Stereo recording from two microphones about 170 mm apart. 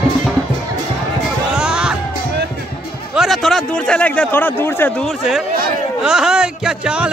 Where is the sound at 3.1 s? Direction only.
Centre (ahead or behind).